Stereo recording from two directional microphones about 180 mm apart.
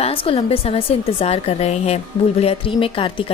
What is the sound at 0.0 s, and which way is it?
A woman's voice, 30° left (ahead or behind).